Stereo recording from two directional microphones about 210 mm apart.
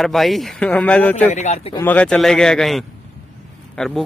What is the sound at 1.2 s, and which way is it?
Speech, 35° left (ahead or behind).